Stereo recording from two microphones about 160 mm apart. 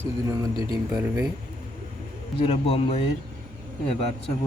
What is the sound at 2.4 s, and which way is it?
Speech, 40° left (ahead or behind).